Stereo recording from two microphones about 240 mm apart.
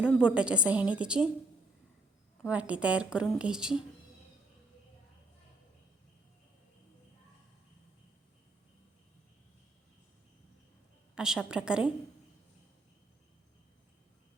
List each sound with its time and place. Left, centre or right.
0.0 s speech: centre
2.4 s speech: centre
11.1 s speech: centre